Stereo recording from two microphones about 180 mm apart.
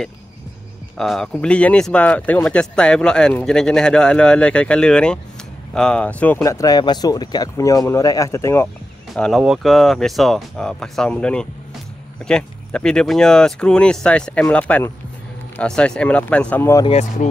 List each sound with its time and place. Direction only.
0.9 s speech: centre (ahead or behind)
9.1 s speech: centre (ahead or behind)
16.8 s speech: 35° left (ahead or behind)